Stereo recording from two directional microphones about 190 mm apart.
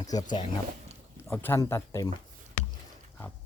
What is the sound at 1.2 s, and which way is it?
Speech, 10° left (ahead or behind).